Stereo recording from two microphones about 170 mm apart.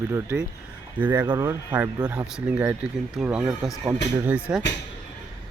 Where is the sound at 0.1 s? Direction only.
10° right (ahead or behind).